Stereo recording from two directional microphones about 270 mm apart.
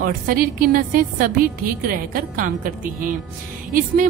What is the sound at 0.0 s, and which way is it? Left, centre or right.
A woman's voice, right.